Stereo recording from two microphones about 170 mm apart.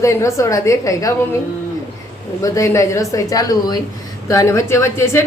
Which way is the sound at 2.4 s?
20° left (ahead or behind).